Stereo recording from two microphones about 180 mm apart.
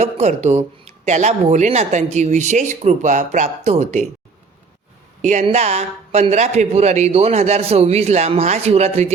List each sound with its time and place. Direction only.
0.0 s speech: 40° right (ahead or behind)
5.2 s speech: 40° right (ahead or behind)